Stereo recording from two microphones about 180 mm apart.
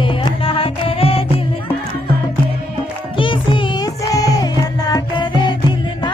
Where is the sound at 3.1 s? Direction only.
30° left (ahead or behind).